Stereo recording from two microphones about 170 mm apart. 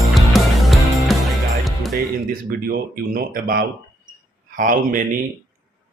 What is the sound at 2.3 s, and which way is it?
Speech, 60° right (ahead or behind).